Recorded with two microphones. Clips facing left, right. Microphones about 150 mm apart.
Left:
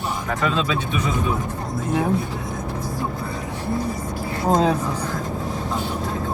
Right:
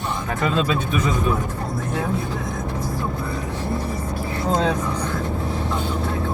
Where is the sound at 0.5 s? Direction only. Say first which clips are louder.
Right 2 dB; 45° right (ahead or behind).